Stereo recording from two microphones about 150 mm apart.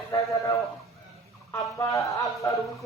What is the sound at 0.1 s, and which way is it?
Speech, 20° left (ahead or behind).